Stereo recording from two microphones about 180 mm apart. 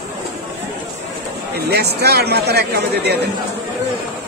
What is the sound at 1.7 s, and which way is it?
Speech, 65° right (ahead or behind).